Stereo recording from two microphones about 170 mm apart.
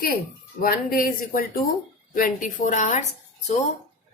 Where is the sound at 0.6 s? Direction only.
60° left (ahead or behind).